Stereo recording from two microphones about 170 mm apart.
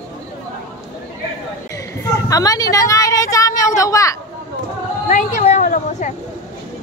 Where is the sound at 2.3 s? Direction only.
20° left (ahead or behind).